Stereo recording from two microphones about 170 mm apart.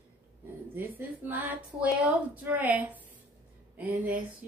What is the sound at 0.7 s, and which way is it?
Speech, 10° right (ahead or behind).